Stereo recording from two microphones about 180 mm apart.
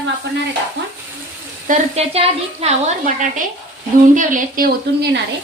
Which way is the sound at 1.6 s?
40° right (ahead or behind).